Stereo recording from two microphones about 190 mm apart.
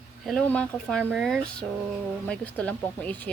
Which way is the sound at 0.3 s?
5° left (ahead or behind).